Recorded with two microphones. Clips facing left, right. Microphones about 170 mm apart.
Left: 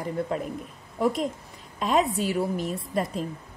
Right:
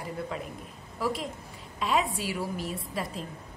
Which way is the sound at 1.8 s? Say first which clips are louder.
Left 4 dB; 45° left (ahead or behind).